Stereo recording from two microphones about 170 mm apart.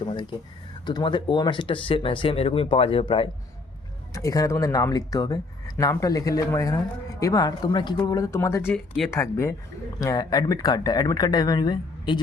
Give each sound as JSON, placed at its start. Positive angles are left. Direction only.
{"t": 0.0, "sound": "speech", "side_deg": 25}
{"t": 4.1, "sound": "speech", "side_deg": 20}